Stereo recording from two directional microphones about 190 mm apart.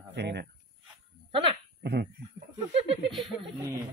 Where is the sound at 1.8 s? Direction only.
60° right (ahead or behind).